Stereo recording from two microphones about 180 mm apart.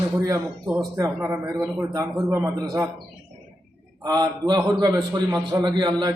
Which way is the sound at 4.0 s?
25° right (ahead or behind).